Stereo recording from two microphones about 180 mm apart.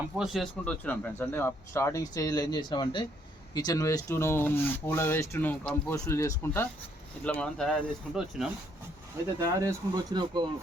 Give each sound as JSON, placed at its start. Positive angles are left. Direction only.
{"t": 0.2, "sound": "speech", "side_deg": 0}
{"t": 9.4, "sound": "speech", "side_deg": -15}